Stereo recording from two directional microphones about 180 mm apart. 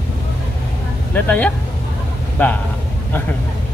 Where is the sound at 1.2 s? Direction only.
10° left (ahead or behind).